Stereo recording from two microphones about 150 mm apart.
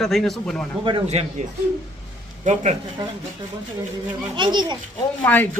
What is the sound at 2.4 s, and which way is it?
Speech, 50° right (ahead or behind).